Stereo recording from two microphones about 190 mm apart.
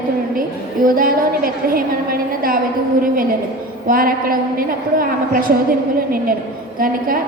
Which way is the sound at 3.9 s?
50° right (ahead or behind).